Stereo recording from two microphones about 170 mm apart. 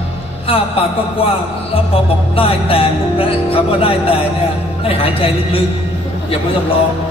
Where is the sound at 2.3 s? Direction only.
35° left (ahead or behind).